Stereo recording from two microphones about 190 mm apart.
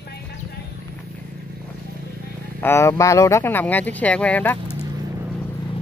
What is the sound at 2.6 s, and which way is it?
Speech, 15° left (ahead or behind).